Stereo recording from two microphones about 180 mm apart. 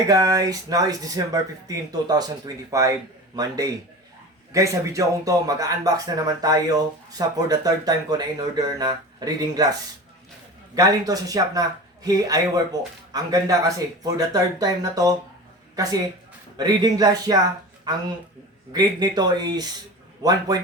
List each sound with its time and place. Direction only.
0.1 s speech: 20° right (ahead or behind)
10.8 s a woman's voice: 20° right (ahead or behind)
18.7 s speech: 20° right (ahead or behind)